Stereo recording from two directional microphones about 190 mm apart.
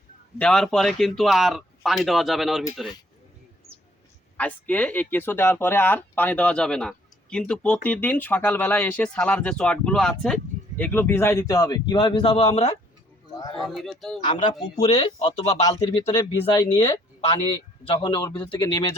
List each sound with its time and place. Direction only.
0.3 s speech: 5° left (ahead or behind)
4.4 s speech: 5° left (ahead or behind); by 12.5 s 30° left (ahead or behind)
13.6 s speech: centre (ahead or behind)
14.8 s speech: 20° left (ahead or behind)